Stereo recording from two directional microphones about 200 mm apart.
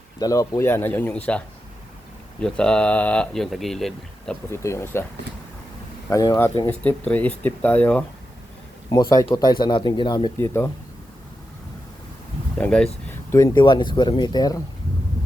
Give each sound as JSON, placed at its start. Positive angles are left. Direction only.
{"t": 0.2, "sound": "speech", "side_deg": 15}
{"t": 2.4, "sound": "speech", "side_deg": 5}
{"t": 4.5, "sound": "speech", "side_deg": 15}
{"t": 6.1, "sound": "speech", "side_deg": 15}
{"t": 8.9, "sound": "speech", "side_deg": 20}
{"t": 10.3, "sound": "speech", "side_deg": 10}
{"t": 12.5, "sound": "speech", "side_deg": 5}